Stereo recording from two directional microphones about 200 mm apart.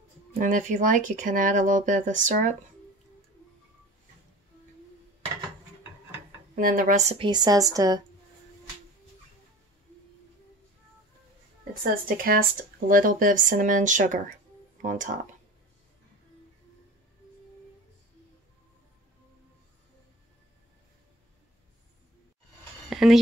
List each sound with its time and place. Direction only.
0.3 s speech: 40° right (ahead or behind)
6.5 s speech: 45° right (ahead or behind)
7.2 s a woman's voice: 20° right (ahead or behind)
11.8 s speech: 45° right (ahead or behind)
22.8 s a sound: centre (ahead or behind)